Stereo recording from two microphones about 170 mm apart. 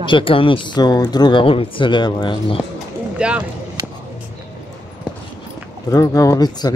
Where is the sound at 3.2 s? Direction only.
5° right (ahead or behind).